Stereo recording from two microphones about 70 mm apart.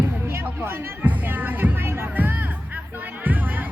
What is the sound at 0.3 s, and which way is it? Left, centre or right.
Music, right.